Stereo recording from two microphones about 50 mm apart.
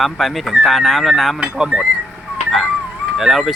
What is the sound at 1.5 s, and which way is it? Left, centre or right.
Speech, centre.